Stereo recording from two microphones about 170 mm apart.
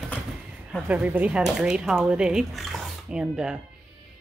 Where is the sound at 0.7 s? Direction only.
5° right (ahead or behind).